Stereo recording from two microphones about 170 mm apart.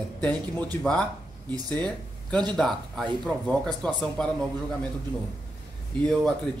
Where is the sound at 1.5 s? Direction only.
25° right (ahead or behind).